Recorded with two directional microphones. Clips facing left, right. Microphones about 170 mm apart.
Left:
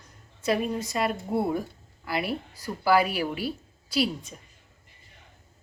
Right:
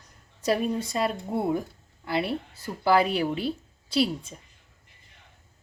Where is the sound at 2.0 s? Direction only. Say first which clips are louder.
Right 2 dB; 25° right (ahead or behind).